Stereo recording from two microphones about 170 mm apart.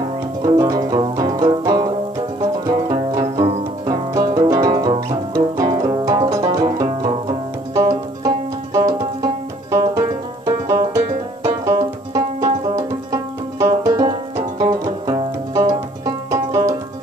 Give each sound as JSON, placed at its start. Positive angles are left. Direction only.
{"t": 0.4, "sound": "music", "side_deg": -25}